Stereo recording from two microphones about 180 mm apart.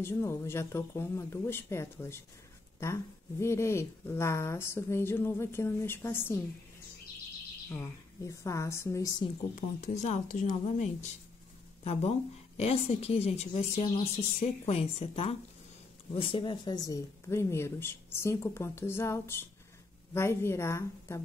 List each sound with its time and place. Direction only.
0.0 s speech: 15° left (ahead or behind)
7.7 s speech: 15° left (ahead or behind)
9.6 s a woman's voice: 45° left (ahead or behind); by 21.2 s 15° left (ahead or behind)